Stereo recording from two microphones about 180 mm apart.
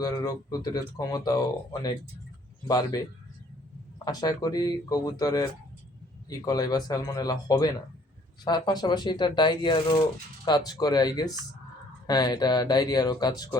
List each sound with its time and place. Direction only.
0.0 s speech: 20° left (ahead or behind)
4.0 s speech: 20° left (ahead or behind)